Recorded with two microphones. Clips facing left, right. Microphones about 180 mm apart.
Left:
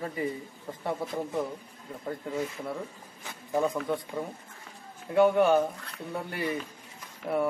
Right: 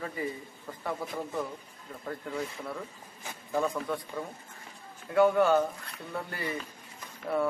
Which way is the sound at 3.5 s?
20° left (ahead or behind).